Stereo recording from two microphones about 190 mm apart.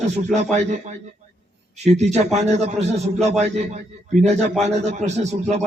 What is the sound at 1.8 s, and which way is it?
A man's voice, 35° right (ahead or behind).